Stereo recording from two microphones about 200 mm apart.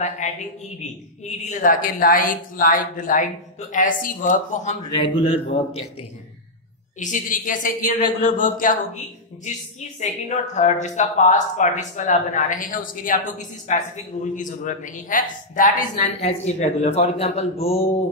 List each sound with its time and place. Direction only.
0.2 s a woman's voice: 35° left (ahead or behind)
5.0 s speech: 30° left (ahead or behind)
7.0 s a woman's voice: 40° left (ahead or behind)